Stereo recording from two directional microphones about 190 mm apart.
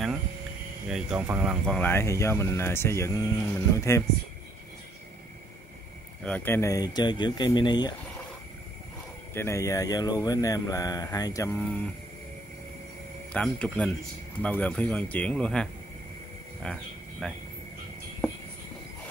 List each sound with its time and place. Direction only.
0.8 s speech: 5° right (ahead or behind)
1.8 s speech: 10° left (ahead or behind)
6.2 s speech: 10° left (ahead or behind)
9.3 s speech: 15° left (ahead or behind)
13.3 s speech: 5° left (ahead or behind)
16.6 s a sound: 5° left (ahead or behind)